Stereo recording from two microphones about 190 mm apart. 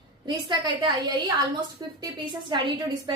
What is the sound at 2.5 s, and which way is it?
Speech, 25° right (ahead or behind).